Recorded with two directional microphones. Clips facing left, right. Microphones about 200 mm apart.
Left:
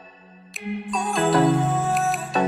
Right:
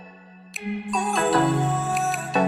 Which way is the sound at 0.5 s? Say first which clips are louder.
Even; centre (ahead or behind).